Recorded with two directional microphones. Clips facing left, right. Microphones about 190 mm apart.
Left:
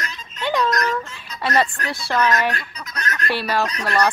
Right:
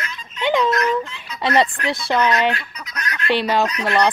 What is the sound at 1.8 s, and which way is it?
Speech, 40° left (ahead or behind).